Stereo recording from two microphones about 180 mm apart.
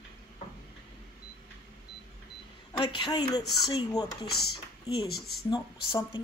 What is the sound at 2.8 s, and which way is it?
Speech, 25° left (ahead or behind).